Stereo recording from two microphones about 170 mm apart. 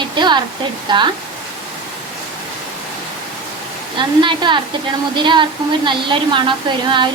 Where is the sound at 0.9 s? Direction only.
25° right (ahead or behind).